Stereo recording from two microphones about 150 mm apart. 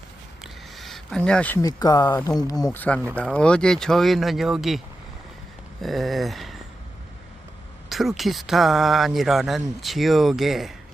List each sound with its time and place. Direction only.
0.4 s a sound: centre (ahead or behind)
1.6 s speech: 25° left (ahead or behind)
2.7 s speech: 10° left (ahead or behind)
5.8 s speech: centre (ahead or behind)
7.9 s speech: centre (ahead or behind)